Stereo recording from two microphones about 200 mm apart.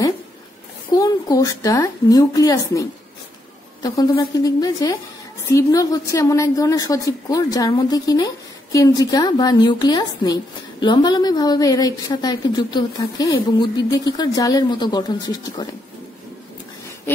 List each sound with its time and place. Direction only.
0.9 s a woman's voice: 20° left (ahead or behind)